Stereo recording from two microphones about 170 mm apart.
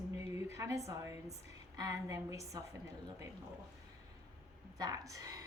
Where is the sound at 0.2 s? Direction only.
15° right (ahead or behind).